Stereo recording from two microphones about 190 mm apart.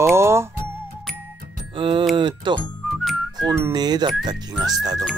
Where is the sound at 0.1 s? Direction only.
15° right (ahead or behind).